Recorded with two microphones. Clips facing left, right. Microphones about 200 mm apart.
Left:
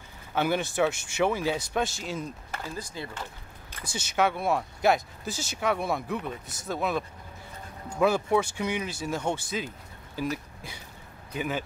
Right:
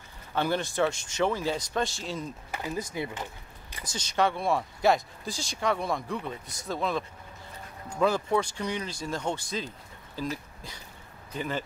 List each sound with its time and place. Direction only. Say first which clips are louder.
0.3 s speech: left 1 dB; 10° left (ahead or behind)
2.5 s speech: right 7 dB; 20° right (ahead or behind)
3.8 s speech: left 1 dB; 10° left (ahead or behind)